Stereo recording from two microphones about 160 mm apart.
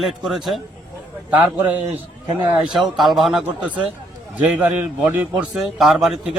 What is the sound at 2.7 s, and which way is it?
A man's voice, centre (ahead or behind).